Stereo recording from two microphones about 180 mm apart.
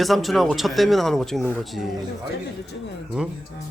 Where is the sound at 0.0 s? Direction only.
Centre (ahead or behind).